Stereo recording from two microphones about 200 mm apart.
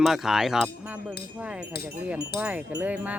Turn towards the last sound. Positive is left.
turn(degrees=-10)  # may be behind; listen again after turning